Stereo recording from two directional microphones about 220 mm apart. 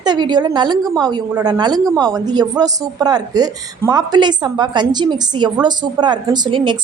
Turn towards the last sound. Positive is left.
turn(degrees=-20)  # may be behind; listen again after turning